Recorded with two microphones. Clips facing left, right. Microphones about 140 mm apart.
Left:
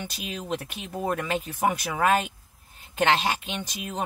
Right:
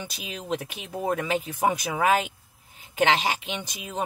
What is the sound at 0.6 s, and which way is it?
Speech, 10° right (ahead or behind).